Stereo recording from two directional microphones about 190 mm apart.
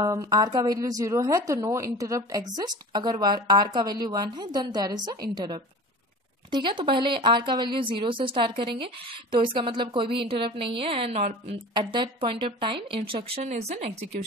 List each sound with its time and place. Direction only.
0.0 s speech: 20° right (ahead or behind); by 11.6 s 35° right (ahead or behind)
11.7 s speech: 25° right (ahead or behind)